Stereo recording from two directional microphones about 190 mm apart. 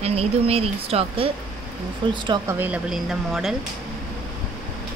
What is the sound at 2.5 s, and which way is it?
Speech, 10° right (ahead or behind).